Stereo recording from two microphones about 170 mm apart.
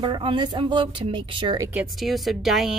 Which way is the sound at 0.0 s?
30° right (ahead or behind).